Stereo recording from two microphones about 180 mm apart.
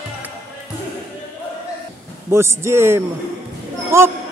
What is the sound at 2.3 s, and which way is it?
Speech, 15° right (ahead or behind).